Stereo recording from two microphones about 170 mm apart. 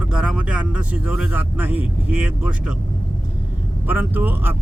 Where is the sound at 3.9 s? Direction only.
10° right (ahead or behind).